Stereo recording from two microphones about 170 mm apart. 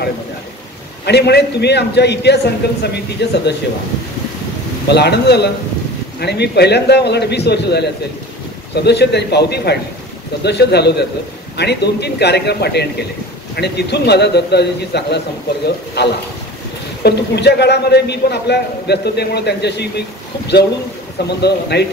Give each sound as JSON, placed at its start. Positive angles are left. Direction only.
{"t": 1.0, "sound": "a man's voice", "side_deg": 75}
{"t": 4.8, "sound": "a man's voice", "side_deg": 80}
{"t": 21.4, "sound": "a man's voice", "side_deg": 80}